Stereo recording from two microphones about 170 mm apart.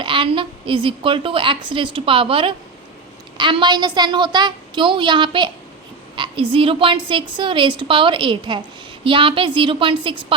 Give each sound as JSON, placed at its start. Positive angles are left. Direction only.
{"t": 0.0, "sound": "a woman's voice", "side_deg": -30}